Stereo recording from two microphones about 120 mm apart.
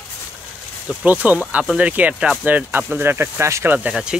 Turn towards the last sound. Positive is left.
turn(degrees=-10)  # may be behind; listen again after turning